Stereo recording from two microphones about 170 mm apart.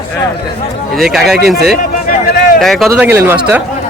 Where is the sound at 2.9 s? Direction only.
10° right (ahead or behind).